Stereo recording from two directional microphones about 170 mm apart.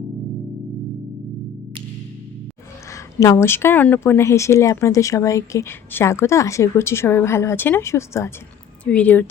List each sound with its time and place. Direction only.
2.9 s a woman's voice: 20° left (ahead or behind)